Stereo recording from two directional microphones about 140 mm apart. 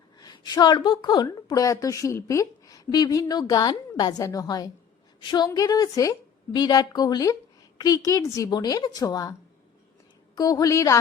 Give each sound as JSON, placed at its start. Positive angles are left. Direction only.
{"t": 0.2, "sound": "a woman's voice", "side_deg": 30}
{"t": 10.3, "sound": "a woman's voice", "side_deg": 25}